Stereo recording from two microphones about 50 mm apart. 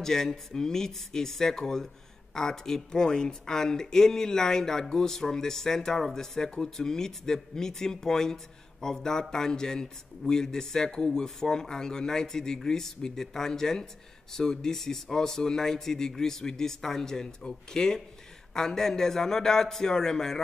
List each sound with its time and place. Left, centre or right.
0.0 s a man's voice: centre